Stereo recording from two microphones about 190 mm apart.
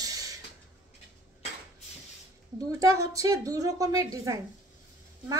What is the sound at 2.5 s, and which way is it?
A woman's voice, 20° right (ahead or behind).